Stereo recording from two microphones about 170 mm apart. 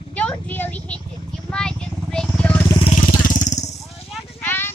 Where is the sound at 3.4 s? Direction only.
45° left (ahead or behind).